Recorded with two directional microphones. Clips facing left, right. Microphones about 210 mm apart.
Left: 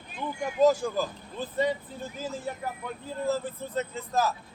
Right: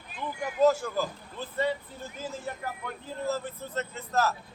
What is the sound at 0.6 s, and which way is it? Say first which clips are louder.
Speech: left 1 dB; 15° left (ahead or behind).